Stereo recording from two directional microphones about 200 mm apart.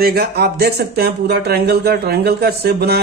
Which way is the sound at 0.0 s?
50° right (ahead or behind).